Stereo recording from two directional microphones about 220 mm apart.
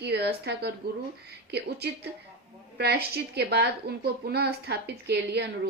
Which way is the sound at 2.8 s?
45° right (ahead or behind).